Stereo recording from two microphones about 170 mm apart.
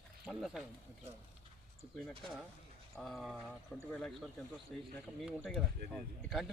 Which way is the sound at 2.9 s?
Centre (ahead or behind).